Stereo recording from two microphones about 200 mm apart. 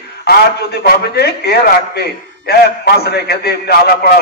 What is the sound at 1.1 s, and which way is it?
A man's voice, 55° left (ahead or behind).